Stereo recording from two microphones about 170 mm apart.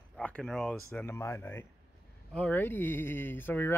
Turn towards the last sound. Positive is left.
turn(degrees=10)  # may be behind; listen again after turning